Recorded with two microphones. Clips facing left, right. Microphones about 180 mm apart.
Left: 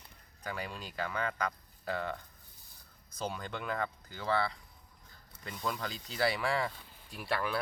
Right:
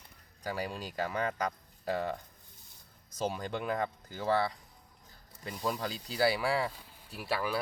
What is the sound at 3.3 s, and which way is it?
Speech, 15° right (ahead or behind).